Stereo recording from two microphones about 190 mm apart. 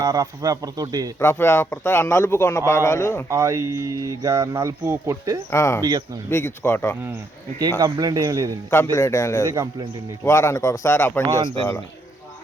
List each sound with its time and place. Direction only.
0.0 s a man's voice: 20° right (ahead or behind)
1.2 s a man's voice: 15° left (ahead or behind)
3.2 s speech: 15° right (ahead or behind)
5.5 s a man's voice: 15° left (ahead or behind)
7.8 s speech: 20° right (ahead or behind)
8.7 s a man's voice: 15° left (ahead or behind)
9.5 s speech: 15° right (ahead or behind)
10.2 s a man's voice: 15° left (ahead or behind)